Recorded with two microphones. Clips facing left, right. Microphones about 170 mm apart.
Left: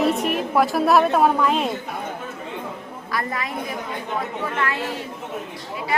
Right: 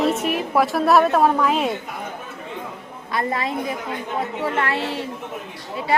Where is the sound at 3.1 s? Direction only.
25° right (ahead or behind).